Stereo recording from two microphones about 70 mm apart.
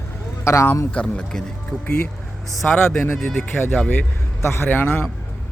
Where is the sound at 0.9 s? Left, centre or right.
Centre.